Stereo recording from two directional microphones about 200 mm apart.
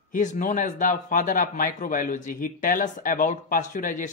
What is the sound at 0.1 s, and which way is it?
Speech, 40° left (ahead or behind).